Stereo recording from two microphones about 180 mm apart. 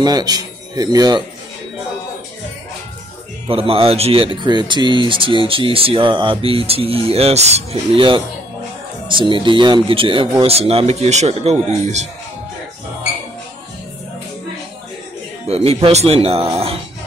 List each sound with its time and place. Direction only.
0.0 s speech: 20° right (ahead or behind)
3.4 s speech: 30° right (ahead or behind)
15.4 s speech: 35° right (ahead or behind)